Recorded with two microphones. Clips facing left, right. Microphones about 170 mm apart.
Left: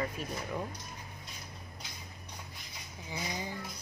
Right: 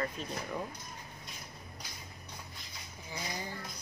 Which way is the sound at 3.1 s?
15° left (ahead or behind).